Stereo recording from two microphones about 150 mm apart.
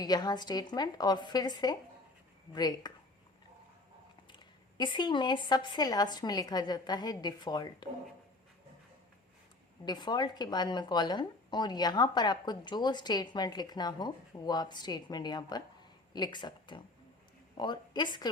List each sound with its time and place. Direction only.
0.0 s a woman's voice: 25° left (ahead or behind)
4.3 s a woman's voice: 30° left (ahead or behind)
9.8 s a woman's voice: 30° left (ahead or behind)